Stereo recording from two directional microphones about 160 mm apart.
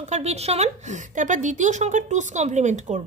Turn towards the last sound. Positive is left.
turn(degrees=-45)  # may be behind; listen again after turning